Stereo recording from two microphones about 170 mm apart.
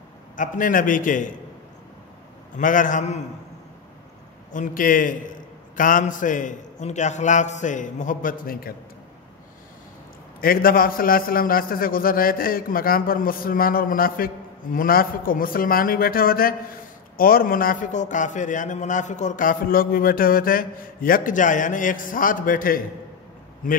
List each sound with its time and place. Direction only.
0.4 s a man's voice: 50° left (ahead or behind)
2.5 s a man's voice: 50° left (ahead or behind)
4.5 s a man's voice: 50° left (ahead or behind)
10.4 s a man's voice: 60° left (ahead or behind)